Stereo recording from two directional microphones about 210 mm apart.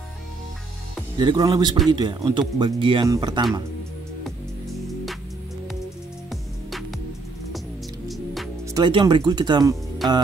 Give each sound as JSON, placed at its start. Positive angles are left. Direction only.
{"t": 1.1, "sound": "speech", "side_deg": -15}
{"t": 8.7, "sound": "speech", "side_deg": -20}